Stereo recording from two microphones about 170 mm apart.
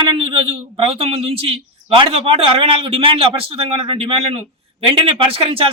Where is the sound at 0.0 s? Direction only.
30° right (ahead or behind).